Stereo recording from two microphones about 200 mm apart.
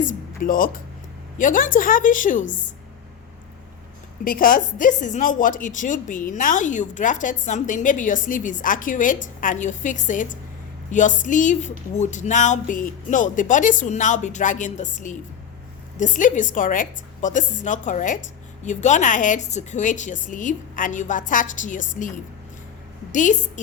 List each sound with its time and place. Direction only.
0.4 s a woman's voice: 45° left (ahead or behind)
4.2 s a woman's voice: 45° left (ahead or behind)
23.1 s a woman's voice: 40° left (ahead or behind)